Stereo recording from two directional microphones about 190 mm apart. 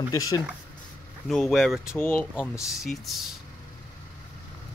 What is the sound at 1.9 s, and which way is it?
Speech, 10° left (ahead or behind).